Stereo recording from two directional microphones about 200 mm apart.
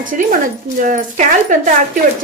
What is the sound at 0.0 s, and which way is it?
Speech, 40° right (ahead or behind).